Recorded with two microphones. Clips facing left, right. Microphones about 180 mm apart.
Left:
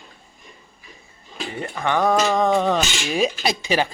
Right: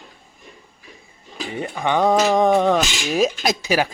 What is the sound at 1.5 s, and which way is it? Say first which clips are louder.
Speech: right 2 dB; 15° right (ahead or behind).